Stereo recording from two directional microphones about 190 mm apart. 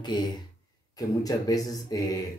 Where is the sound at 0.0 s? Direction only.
20° left (ahead or behind).